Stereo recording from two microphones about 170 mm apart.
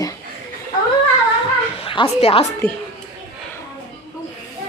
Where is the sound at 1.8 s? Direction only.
30° left (ahead or behind).